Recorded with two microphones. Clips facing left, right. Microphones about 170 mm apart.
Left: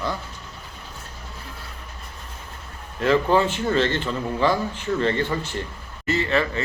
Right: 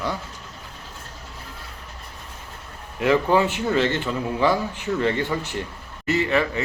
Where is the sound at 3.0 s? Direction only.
15° right (ahead or behind).